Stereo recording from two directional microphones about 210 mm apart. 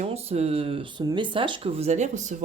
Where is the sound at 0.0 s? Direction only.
30° right (ahead or behind).